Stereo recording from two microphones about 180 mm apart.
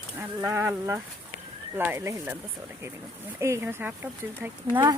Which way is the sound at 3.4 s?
15° right (ahead or behind).